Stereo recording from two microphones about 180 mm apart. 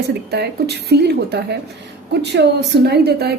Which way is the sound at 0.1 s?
65° right (ahead or behind).